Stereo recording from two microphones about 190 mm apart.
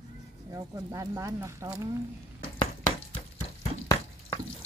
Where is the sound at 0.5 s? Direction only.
20° right (ahead or behind).